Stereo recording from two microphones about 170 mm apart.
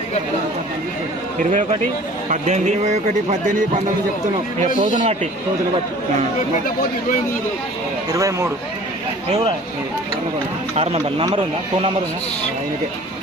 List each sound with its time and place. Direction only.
1.4 s speech: 50° right (ahead or behind)
4.8 s speech: 50° right (ahead or behind)
8.1 s speech: 15° right (ahead or behind)
10.8 s speech: 35° right (ahead or behind)